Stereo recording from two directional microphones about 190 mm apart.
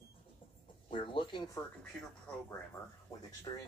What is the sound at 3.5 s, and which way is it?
Speech, 25° left (ahead or behind).